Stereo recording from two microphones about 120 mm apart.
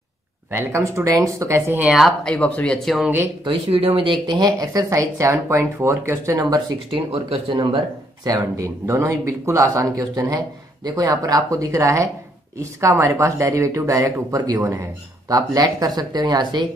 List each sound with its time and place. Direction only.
0.5 s speech: 20° right (ahead or behind)
1.8 s speech: 5° right (ahead or behind)
2.2 s speech: 10° left (ahead or behind)
3.4 s speech: 50° right (ahead or behind); by 6.6 s 25° right (ahead or behind)
6.9 s speech: 50° right (ahead or behind)
7.5 s speech: 35° right (ahead or behind)